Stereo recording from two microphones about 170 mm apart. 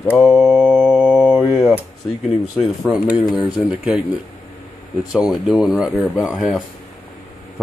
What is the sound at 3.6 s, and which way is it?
Speech, 5° right (ahead or behind).